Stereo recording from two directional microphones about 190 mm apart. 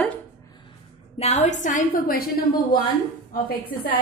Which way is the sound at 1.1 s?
35° left (ahead or behind).